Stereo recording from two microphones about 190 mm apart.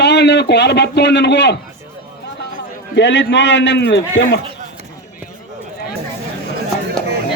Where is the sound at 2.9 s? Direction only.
65° left (ahead or behind).